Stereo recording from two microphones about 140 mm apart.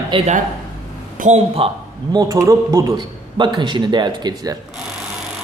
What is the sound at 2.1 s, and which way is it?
A man's voice, 25° right (ahead or behind).